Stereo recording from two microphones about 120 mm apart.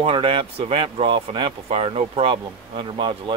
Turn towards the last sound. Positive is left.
turn(degrees=-45)  # may be behind; listen again after turning